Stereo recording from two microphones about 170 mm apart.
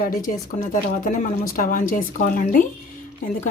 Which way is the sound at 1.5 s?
55° left (ahead or behind).